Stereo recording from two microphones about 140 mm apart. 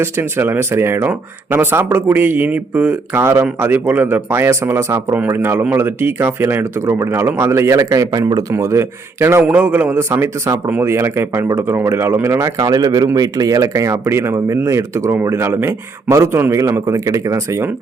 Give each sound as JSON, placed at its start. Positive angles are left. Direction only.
{"t": 0.0, "sound": "a man's voice", "side_deg": -15}